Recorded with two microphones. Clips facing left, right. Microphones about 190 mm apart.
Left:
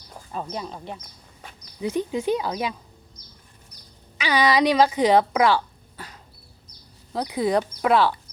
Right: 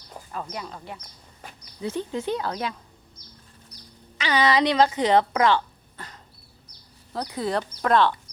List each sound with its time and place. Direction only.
0.4 s speech: 20° left (ahead or behind)
4.2 s speech: 10° left (ahead or behind)